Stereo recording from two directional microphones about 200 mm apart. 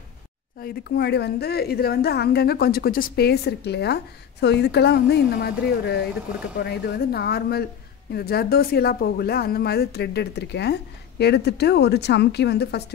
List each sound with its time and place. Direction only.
0.6 s a woman's voice: 50° left (ahead or behind)